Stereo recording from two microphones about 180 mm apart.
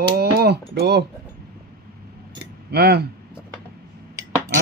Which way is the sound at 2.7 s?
65° right (ahead or behind).